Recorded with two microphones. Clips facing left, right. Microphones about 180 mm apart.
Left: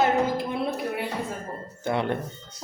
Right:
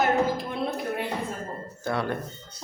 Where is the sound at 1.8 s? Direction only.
20° left (ahead or behind).